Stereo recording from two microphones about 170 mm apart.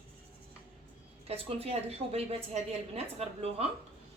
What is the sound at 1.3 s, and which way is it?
A woman's voice, 35° right (ahead or behind).